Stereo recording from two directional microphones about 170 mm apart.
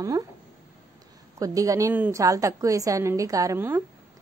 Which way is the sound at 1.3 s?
20° right (ahead or behind).